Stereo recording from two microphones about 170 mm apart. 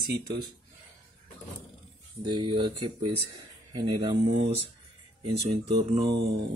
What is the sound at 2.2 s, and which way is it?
Speech, 25° right (ahead or behind).